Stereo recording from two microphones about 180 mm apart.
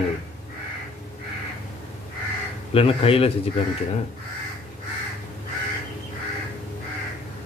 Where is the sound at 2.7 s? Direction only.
30° left (ahead or behind).